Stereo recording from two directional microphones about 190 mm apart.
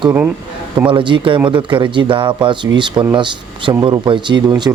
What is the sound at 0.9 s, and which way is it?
Speech, 25° right (ahead or behind).